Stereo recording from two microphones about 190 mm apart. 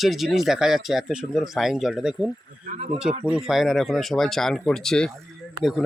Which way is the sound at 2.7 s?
35° right (ahead or behind).